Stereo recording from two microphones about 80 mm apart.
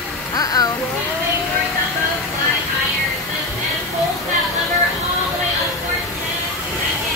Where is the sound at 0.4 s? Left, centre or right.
Left.